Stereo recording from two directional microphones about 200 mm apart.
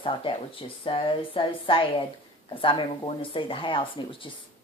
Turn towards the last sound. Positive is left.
turn(degrees=25)  # may be behind; listen again after turning